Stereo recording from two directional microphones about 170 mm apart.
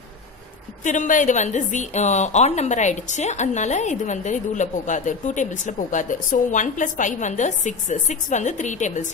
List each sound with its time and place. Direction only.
0.8 s a woman's voice: 50° left (ahead or behind)